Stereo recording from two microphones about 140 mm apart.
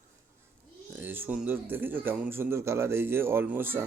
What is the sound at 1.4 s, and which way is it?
Speech, 15° right (ahead or behind).